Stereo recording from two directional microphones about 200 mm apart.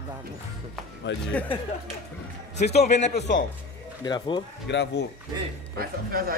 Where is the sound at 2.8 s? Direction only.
35° left (ahead or behind).